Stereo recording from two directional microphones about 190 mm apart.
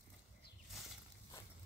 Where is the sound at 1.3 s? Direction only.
15° left (ahead or behind).